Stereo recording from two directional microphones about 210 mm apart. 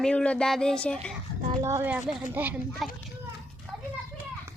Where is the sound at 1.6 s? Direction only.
10° right (ahead or behind).